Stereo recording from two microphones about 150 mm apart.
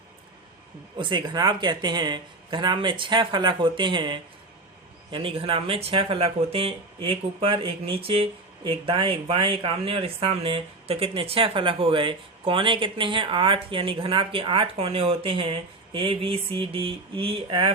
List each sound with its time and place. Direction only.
0.9 s speech: 30° right (ahead or behind)